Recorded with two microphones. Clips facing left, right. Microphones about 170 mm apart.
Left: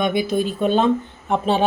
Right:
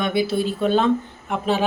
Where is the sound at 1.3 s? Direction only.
30° left (ahead or behind).